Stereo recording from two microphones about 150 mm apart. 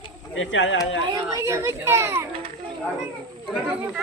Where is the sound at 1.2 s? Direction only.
25° right (ahead or behind).